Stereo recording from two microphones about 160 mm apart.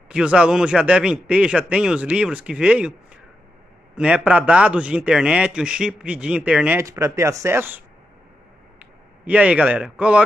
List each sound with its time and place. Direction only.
0.1 s a man's voice: 5° right (ahead or behind)
3.9 s a man's voice: 5° right (ahead or behind)
9.2 s a man's voice: 10° right (ahead or behind)